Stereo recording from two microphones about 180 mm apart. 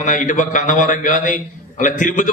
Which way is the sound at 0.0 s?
45° left (ahead or behind).